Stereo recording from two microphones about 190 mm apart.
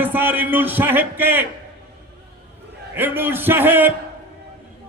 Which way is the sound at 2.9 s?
10° right (ahead or behind).